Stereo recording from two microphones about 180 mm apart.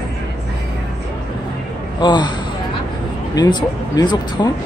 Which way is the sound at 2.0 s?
25° left (ahead or behind).